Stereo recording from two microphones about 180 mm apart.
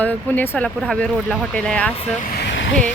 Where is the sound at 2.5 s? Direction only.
90° left.